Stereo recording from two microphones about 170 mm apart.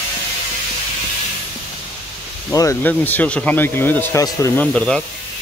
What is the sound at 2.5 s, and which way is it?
Speech, 15° left (ahead or behind).